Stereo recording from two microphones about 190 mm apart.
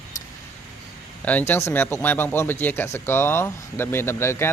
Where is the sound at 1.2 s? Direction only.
10° left (ahead or behind).